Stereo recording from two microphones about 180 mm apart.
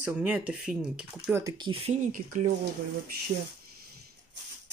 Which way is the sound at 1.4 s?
20° right (ahead or behind).